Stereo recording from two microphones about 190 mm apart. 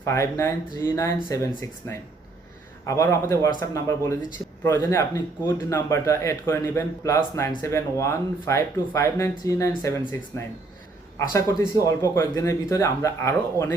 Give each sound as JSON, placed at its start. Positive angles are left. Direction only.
{"t": 0.0, "sound": "speech", "side_deg": 15}